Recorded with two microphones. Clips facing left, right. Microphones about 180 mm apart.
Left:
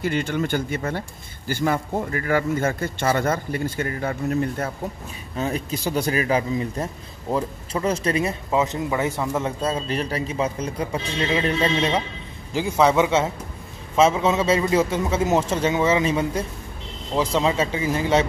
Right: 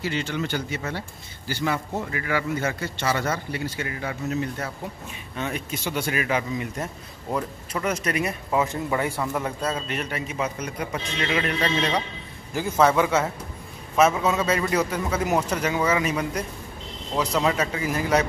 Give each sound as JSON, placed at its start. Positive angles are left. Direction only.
{"t": 0.0, "sound": "speech", "side_deg": 55}
{"t": 5.3, "sound": "speech", "side_deg": 35}